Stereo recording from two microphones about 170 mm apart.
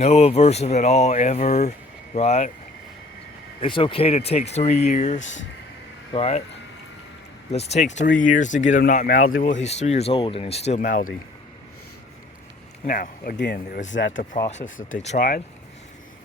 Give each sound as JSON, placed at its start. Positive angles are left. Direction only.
{"t": 0.0, "sound": "speech", "side_deg": 40}
{"t": 3.6, "sound": "speech", "side_deg": 30}
{"t": 7.5, "sound": "speech", "side_deg": 40}
{"t": 12.8, "sound": "speech", "side_deg": 55}
{"t": 13.9, "sound": "speech", "side_deg": 75}
{"t": 14.5, "sound": "speech", "side_deg": 50}